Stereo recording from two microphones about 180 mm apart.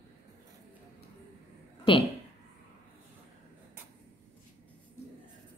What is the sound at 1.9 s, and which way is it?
Speech, 30° left (ahead or behind).